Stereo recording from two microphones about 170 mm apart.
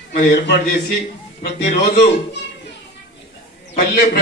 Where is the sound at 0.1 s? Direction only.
70° left (ahead or behind).